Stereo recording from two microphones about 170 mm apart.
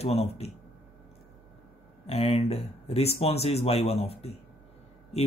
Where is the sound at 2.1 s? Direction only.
35° left (ahead or behind).